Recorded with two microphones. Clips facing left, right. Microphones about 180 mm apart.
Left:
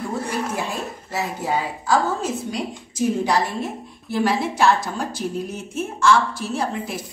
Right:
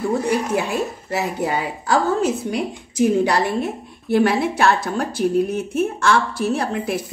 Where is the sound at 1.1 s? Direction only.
65° right (ahead or behind).